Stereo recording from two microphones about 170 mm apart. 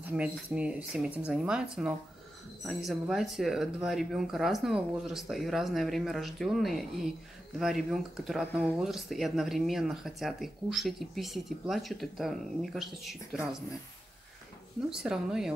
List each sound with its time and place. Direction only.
0.0 s speech: 5° right (ahead or behind)
14.9 s speech: 5° right (ahead or behind)